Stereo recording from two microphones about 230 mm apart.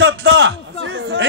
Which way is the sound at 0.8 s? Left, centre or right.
Right.